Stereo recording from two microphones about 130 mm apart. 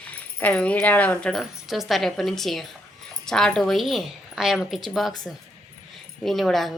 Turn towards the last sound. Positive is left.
turn(degrees=0)  # may be behind; listen again after turning